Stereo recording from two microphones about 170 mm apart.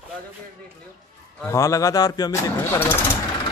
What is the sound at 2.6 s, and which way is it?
Speech, 15° left (ahead or behind).